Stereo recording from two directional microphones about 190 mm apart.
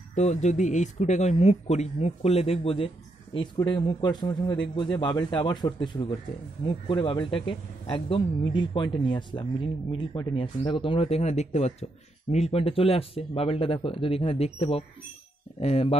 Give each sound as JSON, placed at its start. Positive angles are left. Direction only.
{"t": 0.1, "sound": "speech", "side_deg": 40}